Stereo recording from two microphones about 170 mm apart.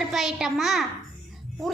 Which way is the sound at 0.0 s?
Centre (ahead or behind).